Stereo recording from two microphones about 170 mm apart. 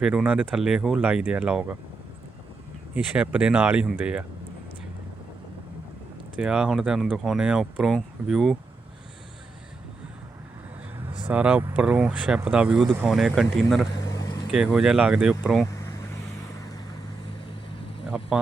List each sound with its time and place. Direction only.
0.0 s speech: 5° right (ahead or behind)
2.9 s speech: 5° right (ahead or behind)
6.4 s speech: 5° right (ahead or behind)
11.3 s speech: 5° right (ahead or behind)
14.0 s vehicle: 20° left (ahead or behind)
14.5 s speech: 5° right (ahead or behind)
18.0 s a sound: 5° right (ahead or behind)